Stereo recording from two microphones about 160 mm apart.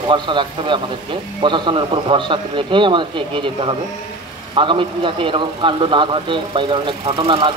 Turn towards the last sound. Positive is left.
turn(degrees=-35)  # may be behind; listen again after turning